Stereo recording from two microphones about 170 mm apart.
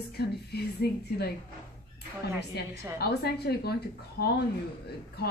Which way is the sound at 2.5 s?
75° left (ahead or behind).